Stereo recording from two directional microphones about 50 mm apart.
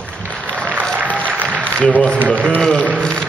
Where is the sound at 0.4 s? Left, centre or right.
Left.